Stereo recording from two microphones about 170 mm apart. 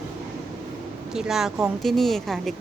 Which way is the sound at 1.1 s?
5° right (ahead or behind).